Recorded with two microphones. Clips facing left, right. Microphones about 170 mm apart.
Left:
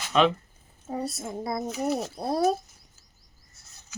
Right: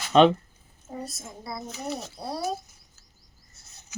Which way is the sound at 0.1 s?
30° right (ahead or behind).